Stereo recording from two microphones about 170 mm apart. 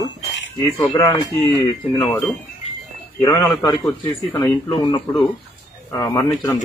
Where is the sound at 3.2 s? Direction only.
20° left (ahead or behind).